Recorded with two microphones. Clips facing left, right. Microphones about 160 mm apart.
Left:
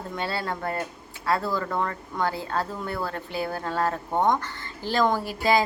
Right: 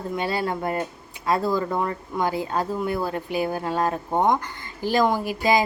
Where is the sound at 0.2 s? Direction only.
15° right (ahead or behind).